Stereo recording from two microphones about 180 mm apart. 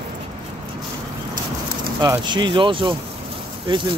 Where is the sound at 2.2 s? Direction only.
25° right (ahead or behind).